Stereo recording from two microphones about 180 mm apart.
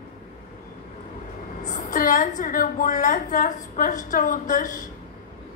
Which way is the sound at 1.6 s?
45° left (ahead or behind).